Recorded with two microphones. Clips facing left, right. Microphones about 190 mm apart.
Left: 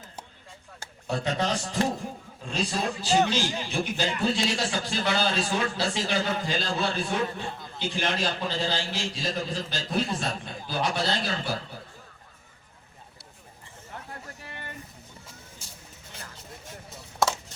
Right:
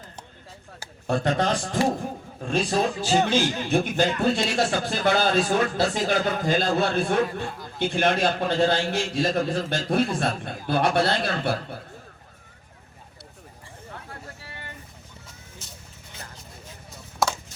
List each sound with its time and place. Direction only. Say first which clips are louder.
1.0 s a man's voice: right 5 dB; 55° right (ahead or behind)